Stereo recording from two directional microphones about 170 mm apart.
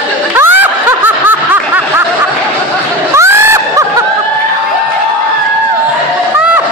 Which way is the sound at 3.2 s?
15° right (ahead or behind).